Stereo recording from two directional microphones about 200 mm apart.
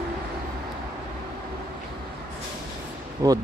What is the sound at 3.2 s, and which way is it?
Speech, 15° right (ahead or behind).